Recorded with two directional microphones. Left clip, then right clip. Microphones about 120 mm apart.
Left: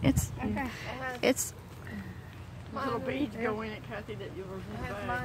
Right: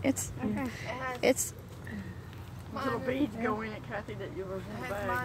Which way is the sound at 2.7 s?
45° right (ahead or behind).